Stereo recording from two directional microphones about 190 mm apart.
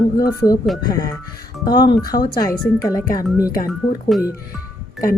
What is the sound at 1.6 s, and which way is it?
Speech, 20° left (ahead or behind).